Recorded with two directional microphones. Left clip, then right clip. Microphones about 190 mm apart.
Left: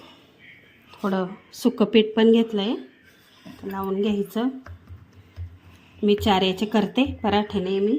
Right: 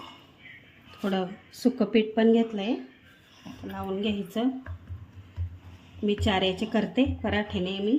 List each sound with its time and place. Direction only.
0.9 s a woman's voice: 25° left (ahead or behind); by 2.7 s 50° left (ahead or behind)
3.8 s a woman's voice: 35° left (ahead or behind)
6.1 s a woman's voice: 45° left (ahead or behind)